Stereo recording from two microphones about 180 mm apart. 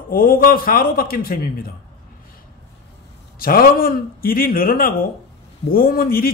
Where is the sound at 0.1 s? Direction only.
55° left (ahead or behind).